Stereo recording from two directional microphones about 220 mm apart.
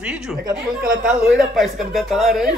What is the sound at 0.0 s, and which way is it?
A woman's voice, 5° right (ahead or behind).